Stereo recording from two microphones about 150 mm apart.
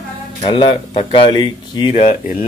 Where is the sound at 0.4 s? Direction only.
35° left (ahead or behind).